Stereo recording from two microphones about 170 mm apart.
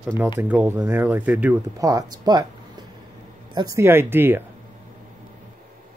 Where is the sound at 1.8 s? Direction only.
20° right (ahead or behind).